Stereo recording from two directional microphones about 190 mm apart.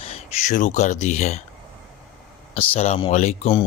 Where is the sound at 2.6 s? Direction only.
35° left (ahead or behind).